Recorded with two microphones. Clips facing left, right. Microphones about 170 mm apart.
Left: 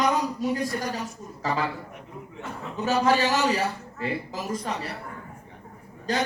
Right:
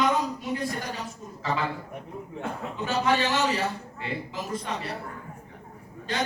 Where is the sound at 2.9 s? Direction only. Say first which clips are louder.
Left 3 dB; 40° left (ahead or behind).